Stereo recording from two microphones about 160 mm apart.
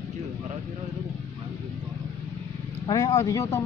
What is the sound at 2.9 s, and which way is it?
Speech, 20° left (ahead or behind).